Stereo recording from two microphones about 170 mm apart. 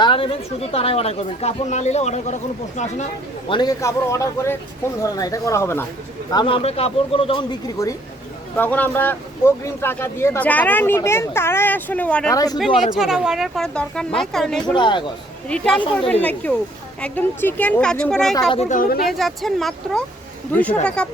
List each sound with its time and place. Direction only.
0.0 s speech: 30° left (ahead or behind)
3.5 s speech: 25° left (ahead or behind)
6.3 s speech: 30° left (ahead or behind)
8.5 s speech: 10° left (ahead or behind)
12.3 s speech: 20° left (ahead or behind)
13.0 s a woman's voice: 5° right (ahead or behind)
14.8 s speech: 25° left (ahead or behind)
15.4 s a woman's voice: 5° left (ahead or behind)
18.5 s speech: 40° left (ahead or behind)
19.0 s a woman's voice: centre (ahead or behind)